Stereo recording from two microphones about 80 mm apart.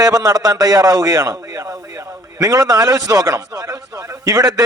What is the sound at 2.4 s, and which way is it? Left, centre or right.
A man's voice, right.